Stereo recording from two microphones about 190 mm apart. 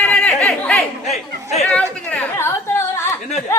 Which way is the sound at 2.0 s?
10° left (ahead or behind).